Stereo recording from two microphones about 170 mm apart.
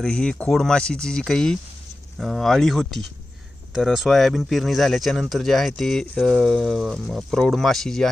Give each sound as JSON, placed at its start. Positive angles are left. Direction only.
{"t": 0.0, "sound": "speech", "side_deg": 5}